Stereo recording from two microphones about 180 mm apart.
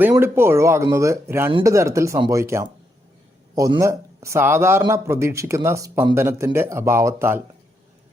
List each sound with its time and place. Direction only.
0.0 s speech: 15° right (ahead or behind)